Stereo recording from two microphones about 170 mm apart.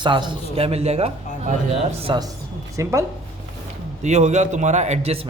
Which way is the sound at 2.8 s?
20° right (ahead or behind).